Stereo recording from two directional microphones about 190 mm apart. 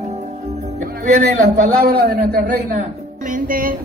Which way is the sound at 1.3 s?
50° right (ahead or behind).